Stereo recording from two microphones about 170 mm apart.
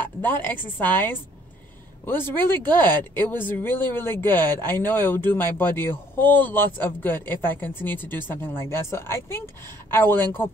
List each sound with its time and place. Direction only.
0.0 s a man's voice: 10° left (ahead or behind)